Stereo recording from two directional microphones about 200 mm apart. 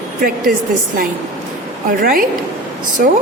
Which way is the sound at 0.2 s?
45° right (ahead or behind).